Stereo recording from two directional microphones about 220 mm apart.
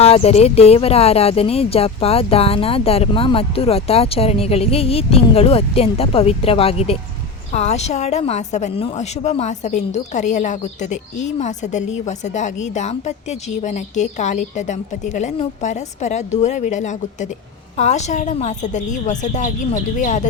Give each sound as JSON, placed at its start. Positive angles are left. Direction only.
{"t": 0.0, "sound": "a woman's voice", "side_deg": 30}